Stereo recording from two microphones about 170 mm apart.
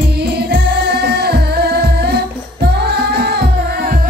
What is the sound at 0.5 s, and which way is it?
Music, 70° right (ahead or behind).